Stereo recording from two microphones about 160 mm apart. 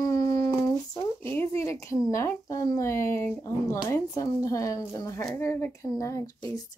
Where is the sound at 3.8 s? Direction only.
20° left (ahead or behind).